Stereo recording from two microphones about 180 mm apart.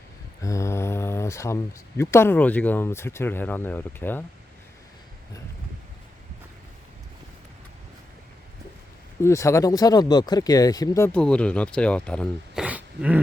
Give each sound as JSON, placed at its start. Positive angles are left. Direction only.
{"t": 0.4, "sound": "speech", "side_deg": 15}
{"t": 9.2, "sound": "speech", "side_deg": 15}
{"t": 12.6, "sound": "dog", "side_deg": -5}